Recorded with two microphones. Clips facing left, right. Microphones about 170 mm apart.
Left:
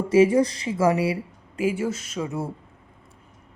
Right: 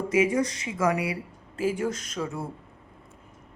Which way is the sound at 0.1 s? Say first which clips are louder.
Left 7 dB; 30° left (ahead or behind).